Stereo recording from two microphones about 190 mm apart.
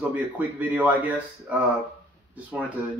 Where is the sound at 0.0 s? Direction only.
10° right (ahead or behind).